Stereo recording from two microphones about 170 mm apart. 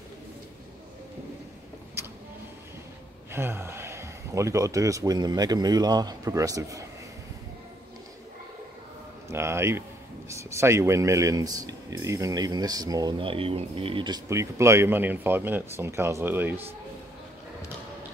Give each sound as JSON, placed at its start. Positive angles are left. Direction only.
{"t": 2.0, "sound": "vehicle", "side_deg": -15}
{"t": 3.3, "sound": "speech", "side_deg": -15}
{"t": 9.3, "sound": "speech", "side_deg": -15}